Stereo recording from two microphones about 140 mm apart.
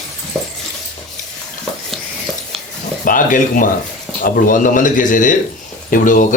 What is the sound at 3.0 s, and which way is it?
Speech, 75° left (ahead or behind).